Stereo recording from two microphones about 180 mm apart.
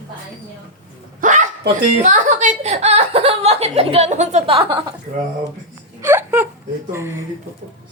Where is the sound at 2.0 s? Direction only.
40° right (ahead or behind).